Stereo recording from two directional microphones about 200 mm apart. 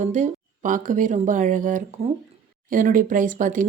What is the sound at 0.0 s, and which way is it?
Speech, 35° right (ahead or behind).